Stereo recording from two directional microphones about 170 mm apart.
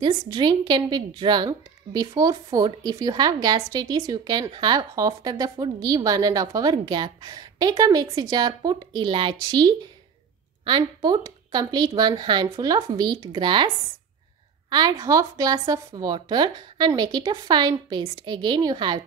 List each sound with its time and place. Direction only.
0.0 s speech: 25° right (ahead or behind)
14.7 s speech: 25° right (ahead or behind)